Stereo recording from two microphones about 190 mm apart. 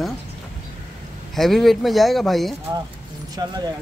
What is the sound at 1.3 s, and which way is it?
Speech, centre (ahead or behind).